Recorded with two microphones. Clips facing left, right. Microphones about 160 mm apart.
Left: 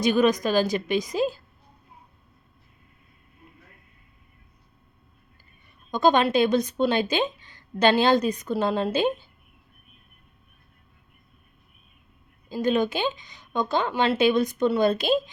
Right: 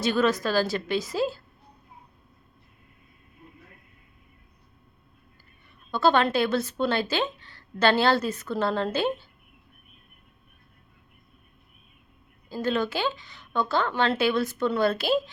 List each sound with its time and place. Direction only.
0.0 s a woman's voice: 15° left (ahead or behind)
5.9 s a woman's voice: 15° left (ahead or behind)
12.5 s a woman's voice: 15° left (ahead or behind)